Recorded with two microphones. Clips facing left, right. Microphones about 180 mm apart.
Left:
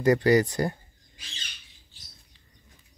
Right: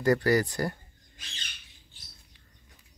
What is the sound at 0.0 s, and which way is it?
Speech, 20° left (ahead or behind).